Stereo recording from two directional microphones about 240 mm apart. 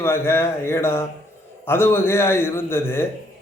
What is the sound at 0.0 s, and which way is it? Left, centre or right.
A man's voice, centre.